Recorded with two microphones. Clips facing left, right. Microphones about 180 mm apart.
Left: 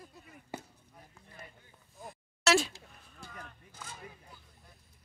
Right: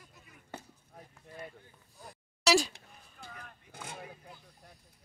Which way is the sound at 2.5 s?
Centre (ahead or behind).